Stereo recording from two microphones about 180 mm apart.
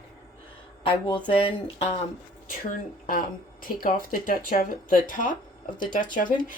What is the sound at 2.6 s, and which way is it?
A woman's voice, 50° left (ahead or behind).